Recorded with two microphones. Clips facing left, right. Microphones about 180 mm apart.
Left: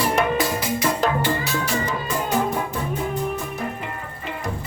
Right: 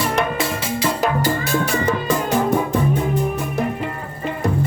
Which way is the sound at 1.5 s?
60° right (ahead or behind).